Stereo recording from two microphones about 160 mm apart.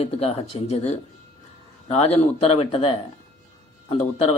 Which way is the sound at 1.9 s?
40° left (ahead or behind).